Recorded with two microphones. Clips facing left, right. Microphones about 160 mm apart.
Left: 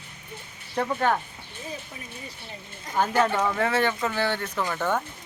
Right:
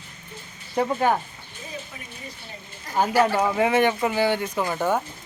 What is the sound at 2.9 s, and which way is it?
Speech, 10° right (ahead or behind).